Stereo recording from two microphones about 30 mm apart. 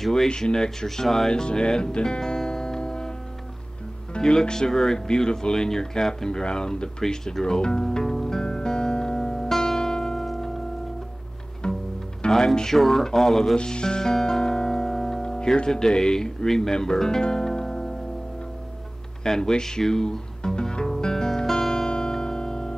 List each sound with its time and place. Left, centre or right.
0.3 s speech: left
1.3 s music: left
4.2 s speech: left
8.0 s music: centre
11.6 s bowed string instrument: left
12.3 s speech: centre
13.6 s speech: left
14.2 s music: centre
15.2 s music: centre
15.5 s speech: left
17.6 s music: centre
19.2 s speech: centre
19.9 s music: centre